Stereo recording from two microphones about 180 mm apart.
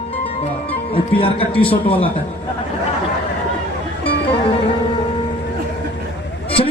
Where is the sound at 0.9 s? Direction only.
30° left (ahead or behind).